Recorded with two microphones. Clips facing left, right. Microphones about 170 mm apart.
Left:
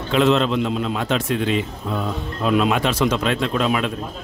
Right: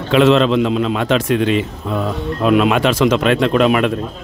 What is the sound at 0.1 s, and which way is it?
A man's voice, 90° right.